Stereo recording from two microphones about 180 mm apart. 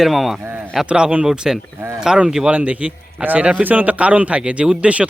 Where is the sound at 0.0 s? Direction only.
Centre (ahead or behind).